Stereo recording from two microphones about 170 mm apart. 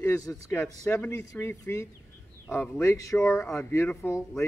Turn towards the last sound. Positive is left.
turn(degrees=10)  # may be behind; listen again after turning